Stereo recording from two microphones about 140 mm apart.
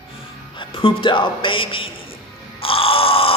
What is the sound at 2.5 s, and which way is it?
Crow, 40° left (ahead or behind).